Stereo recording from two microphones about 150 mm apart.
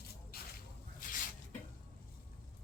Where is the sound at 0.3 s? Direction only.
90° left.